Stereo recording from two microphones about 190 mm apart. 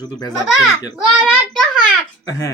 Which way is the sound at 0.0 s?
20° left (ahead or behind).